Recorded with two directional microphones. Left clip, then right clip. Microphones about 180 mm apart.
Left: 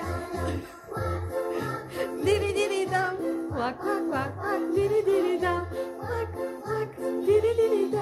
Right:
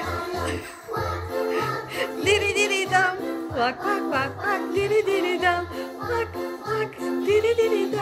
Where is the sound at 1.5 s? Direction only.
10° left (ahead or behind).